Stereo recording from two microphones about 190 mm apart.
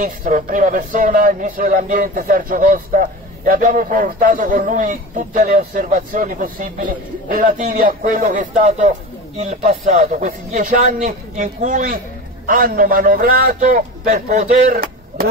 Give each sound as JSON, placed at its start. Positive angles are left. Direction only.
{"t": 0.0, "sound": "a man's voice", "side_deg": -45}